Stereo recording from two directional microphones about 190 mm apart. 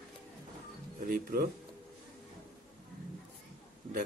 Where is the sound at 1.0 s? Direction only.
55° right (ahead or behind).